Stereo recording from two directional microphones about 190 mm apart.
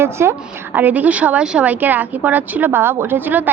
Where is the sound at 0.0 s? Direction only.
15° right (ahead or behind).